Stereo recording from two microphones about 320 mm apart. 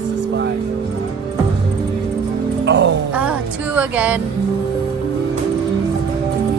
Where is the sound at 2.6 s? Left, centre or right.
Right.